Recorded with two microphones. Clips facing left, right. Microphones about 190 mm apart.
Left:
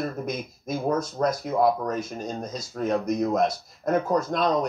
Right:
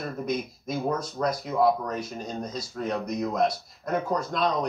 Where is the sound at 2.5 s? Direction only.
45° left (ahead or behind).